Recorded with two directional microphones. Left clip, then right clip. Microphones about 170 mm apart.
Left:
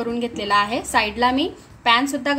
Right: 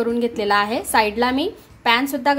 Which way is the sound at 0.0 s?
25° right (ahead or behind).